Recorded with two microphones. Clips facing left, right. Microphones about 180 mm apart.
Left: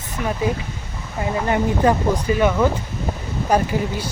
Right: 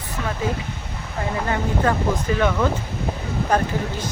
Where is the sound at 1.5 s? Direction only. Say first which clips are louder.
Left 5 dB; 15° left (ahead or behind).